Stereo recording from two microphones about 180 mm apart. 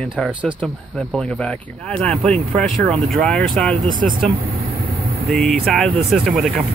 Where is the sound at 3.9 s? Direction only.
50° right (ahead or behind).